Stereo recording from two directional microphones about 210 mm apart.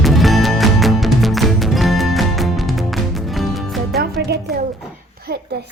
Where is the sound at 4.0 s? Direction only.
50° right (ahead or behind).